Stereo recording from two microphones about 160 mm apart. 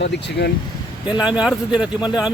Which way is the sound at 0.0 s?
90° left.